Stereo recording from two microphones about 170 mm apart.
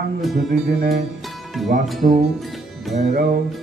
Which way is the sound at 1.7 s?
60° right (ahead or behind).